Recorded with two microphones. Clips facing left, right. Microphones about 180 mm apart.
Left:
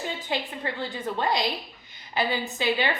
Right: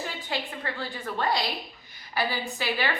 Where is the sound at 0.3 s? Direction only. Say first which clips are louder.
Left 2 dB; 20° left (ahead or behind).